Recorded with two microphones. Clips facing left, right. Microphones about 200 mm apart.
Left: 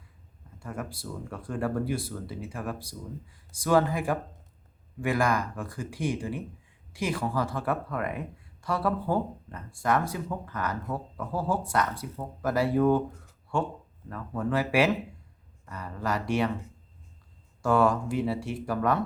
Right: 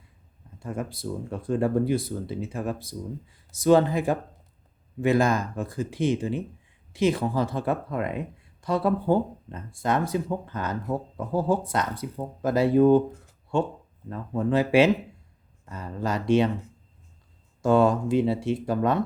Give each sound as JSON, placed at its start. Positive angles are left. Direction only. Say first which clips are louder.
{"t": 0.6, "sound": "speech", "louder": "right 5 dB", "side_deg": -20}
{"t": 17.6, "sound": "speech", "louder": "right 4 dB", "side_deg": -20}